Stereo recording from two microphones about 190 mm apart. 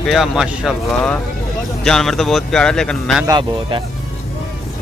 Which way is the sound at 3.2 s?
25° right (ahead or behind).